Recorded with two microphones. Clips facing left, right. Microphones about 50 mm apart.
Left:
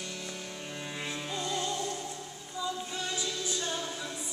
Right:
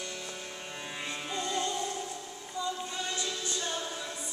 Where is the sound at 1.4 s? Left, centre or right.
Centre.